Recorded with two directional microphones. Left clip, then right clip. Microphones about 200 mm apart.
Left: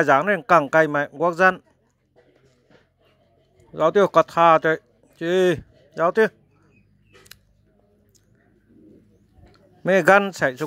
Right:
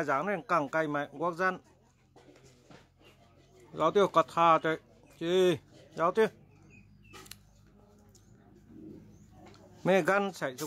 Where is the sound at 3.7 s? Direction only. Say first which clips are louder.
Left 9 dB; 25° left (ahead or behind).